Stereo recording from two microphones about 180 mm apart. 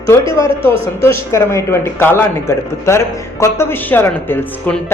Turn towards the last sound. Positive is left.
turn(degrees=10)  # may be behind; listen again after turning